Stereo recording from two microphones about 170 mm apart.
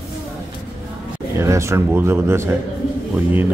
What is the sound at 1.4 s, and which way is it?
A man's voice, 15° right (ahead or behind).